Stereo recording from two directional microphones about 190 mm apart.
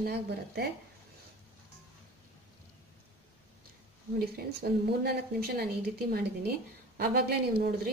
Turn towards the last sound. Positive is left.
turn(degrees=-55)  # may be behind; listen again after turning